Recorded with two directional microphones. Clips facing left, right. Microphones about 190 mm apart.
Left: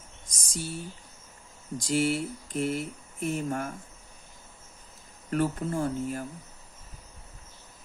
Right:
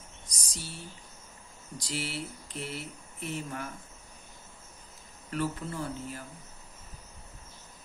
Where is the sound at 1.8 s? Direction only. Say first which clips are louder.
Left 10 dB; 50° left (ahead or behind).